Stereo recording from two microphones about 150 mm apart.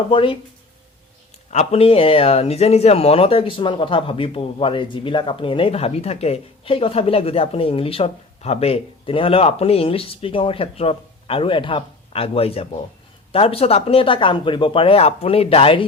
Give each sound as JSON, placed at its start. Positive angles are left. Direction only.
{"t": 0.1, "sound": "speech", "side_deg": 35}
{"t": 1.5, "sound": "speech", "side_deg": 40}